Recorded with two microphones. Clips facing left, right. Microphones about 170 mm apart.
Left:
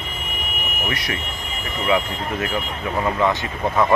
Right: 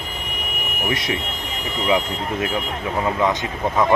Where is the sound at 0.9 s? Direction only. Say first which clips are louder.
Right 7 dB; 20° right (ahead or behind).